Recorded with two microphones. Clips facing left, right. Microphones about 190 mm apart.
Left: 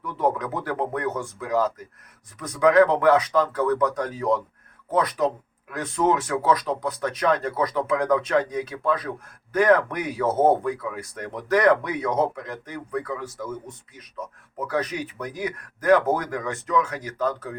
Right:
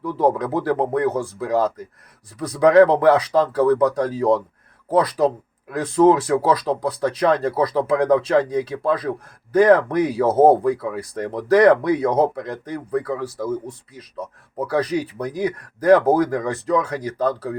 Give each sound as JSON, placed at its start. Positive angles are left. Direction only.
{"t": 0.0, "sound": "speech", "side_deg": -30}